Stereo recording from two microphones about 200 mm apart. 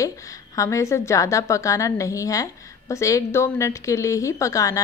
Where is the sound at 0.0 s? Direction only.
15° left (ahead or behind).